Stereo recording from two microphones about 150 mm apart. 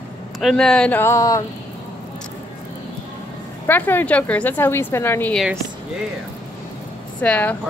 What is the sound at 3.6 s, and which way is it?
A woman's voice, 15° left (ahead or behind).